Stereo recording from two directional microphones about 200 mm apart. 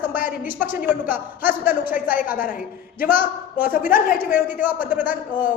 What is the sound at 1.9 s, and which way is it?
A woman's voice, 40° left (ahead or behind).